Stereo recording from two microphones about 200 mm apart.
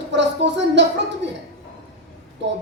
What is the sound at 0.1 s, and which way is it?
Speech, 60° right (ahead or behind).